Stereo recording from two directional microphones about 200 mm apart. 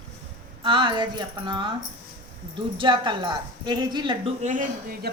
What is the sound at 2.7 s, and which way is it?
A woman's voice, 25° right (ahead or behind).